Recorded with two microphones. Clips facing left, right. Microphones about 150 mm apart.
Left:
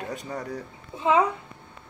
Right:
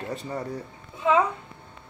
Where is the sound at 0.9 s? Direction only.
20° left (ahead or behind).